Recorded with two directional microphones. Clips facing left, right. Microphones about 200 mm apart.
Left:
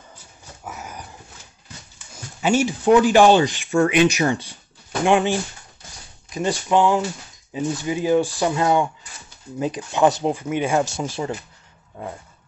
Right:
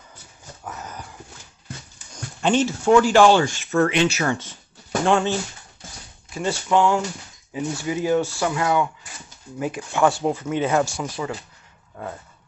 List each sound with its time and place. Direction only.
0.7 s dog: 10° left (ahead or behind)
2.1 s speech: 10° left (ahead or behind); by 11.3 s 25° left (ahead or behind)